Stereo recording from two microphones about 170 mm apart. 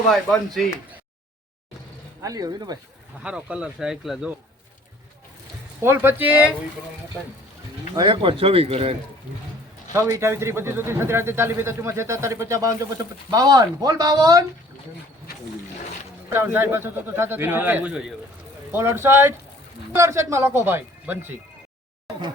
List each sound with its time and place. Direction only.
0.1 s speech: centre (ahead or behind)
2.2 s speech: 20° right (ahead or behind)
3.2 s speech: 5° right (ahead or behind)
5.8 s speech: 15° right (ahead or behind)
7.9 s speech: 30° right (ahead or behind)
9.9 s speech: 15° right (ahead or behind)
16.3 s speech: 15° right (ahead or behind)